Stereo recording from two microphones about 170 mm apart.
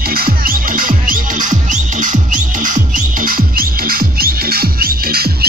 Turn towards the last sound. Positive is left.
turn(degrees=-65)  # may be behind; listen again after turning